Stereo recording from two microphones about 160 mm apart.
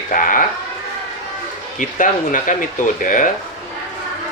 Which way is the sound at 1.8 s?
55° left (ahead or behind).